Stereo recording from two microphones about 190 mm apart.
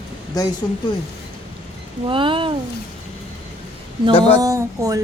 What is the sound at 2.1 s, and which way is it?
Speech, 25° right (ahead or behind).